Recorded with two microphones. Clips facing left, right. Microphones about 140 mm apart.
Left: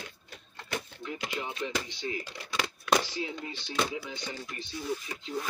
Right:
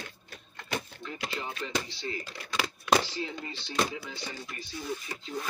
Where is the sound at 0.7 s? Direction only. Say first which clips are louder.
Even; 10° left (ahead or behind).